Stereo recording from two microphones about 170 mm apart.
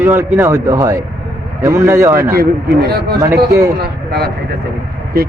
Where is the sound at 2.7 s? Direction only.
65° right (ahead or behind).